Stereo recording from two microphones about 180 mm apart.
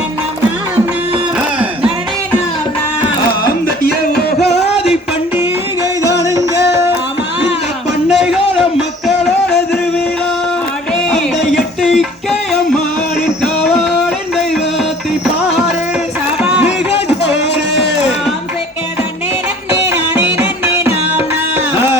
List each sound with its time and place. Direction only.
3.4 s music: 60° left (ahead or behind)
4.5 s music: 35° left (ahead or behind)
6.7 s music: 15° right (ahead or behind)
8.1 s a sound: 5° right (ahead or behind)
10.9 s music: 5° left (ahead or behind)
16.4 s a sound: 5° right (ahead or behind)
19.9 s music: 15° right (ahead or behind)